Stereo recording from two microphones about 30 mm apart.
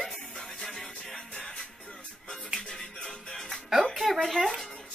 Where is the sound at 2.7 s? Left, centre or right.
Centre.